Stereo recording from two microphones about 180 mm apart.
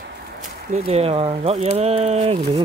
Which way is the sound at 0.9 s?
35° right (ahead or behind).